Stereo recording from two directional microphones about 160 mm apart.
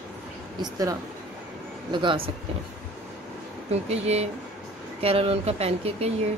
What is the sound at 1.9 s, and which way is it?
Speech, 30° right (ahead or behind).